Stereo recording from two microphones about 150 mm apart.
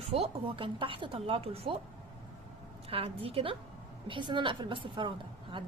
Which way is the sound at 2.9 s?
40° right (ahead or behind).